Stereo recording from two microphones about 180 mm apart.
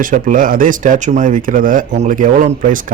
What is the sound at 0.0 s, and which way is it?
Speech, 50° right (ahead or behind).